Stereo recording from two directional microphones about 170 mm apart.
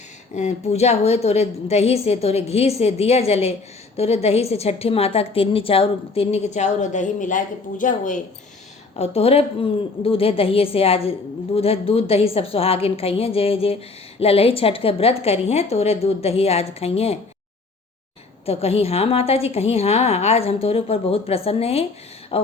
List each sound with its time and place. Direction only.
0.3 s a woman's voice: 40° left (ahead or behind)
9.0 s a woman's voice: 35° left (ahead or behind)
18.4 s a woman's voice: 35° left (ahead or behind)